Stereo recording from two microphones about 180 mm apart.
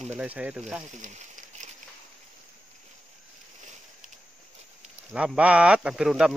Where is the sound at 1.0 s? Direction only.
45° right (ahead or behind).